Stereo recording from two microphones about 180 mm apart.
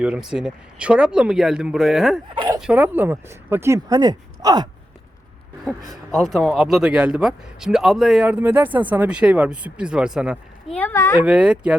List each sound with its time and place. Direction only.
0.0 s speech: 5° right (ahead or behind)
2.3 s bow-wow: 25° right (ahead or behind)
2.6 s speech: 5° right (ahead or behind); by 4.7 s 20° right (ahead or behind)
5.9 s speech: centre (ahead or behind)
10.8 s speech: 10° left (ahead or behind)
11.2 s speech: 5° right (ahead or behind)